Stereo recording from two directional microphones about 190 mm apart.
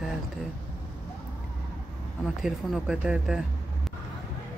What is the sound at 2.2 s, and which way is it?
Speech, centre (ahead or behind).